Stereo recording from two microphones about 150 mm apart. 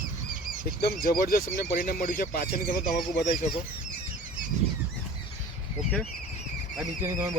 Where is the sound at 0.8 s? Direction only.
85° left; by 3.5 s 60° left (ahead or behind).